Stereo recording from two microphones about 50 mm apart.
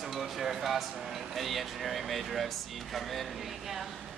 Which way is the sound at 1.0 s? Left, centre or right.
Centre.